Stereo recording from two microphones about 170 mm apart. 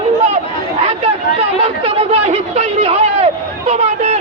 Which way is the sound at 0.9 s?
35° right (ahead or behind).